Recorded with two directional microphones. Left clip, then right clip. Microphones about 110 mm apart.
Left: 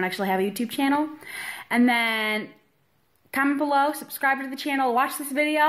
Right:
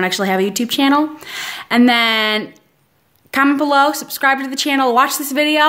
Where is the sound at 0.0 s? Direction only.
30° right (ahead or behind).